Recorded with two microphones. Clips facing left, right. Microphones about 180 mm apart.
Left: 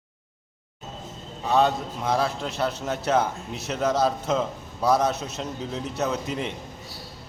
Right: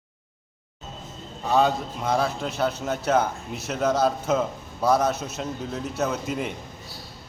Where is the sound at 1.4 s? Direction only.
Centre (ahead or behind).